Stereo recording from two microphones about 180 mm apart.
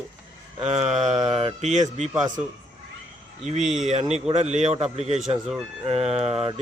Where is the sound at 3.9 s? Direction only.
40° right (ahead or behind).